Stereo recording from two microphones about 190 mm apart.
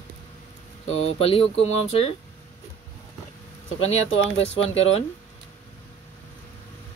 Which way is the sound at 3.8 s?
90° left.